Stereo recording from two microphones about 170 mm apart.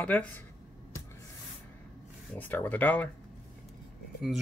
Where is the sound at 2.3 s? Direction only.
10° left (ahead or behind).